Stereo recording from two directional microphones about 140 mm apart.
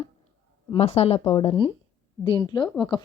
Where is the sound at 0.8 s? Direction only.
45° left (ahead or behind).